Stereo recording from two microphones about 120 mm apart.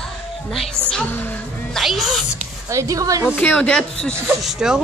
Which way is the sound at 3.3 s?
10° left (ahead or behind).